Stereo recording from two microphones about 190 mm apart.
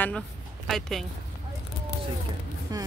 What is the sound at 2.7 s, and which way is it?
Vehicle, 20° right (ahead or behind).